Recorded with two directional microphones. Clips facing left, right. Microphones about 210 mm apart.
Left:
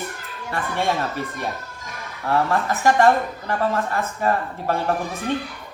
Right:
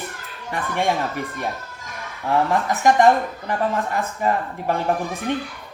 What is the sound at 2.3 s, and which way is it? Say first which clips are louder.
A woman's voice: right 1 dB; 15° right (ahead or behind).